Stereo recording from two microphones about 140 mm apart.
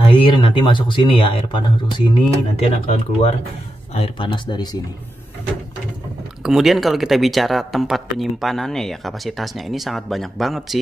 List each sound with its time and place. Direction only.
0.0 s speech: 40° left (ahead or behind)
2.6 s speech: 50° left (ahead or behind)
6.4 s speech: centre (ahead or behind)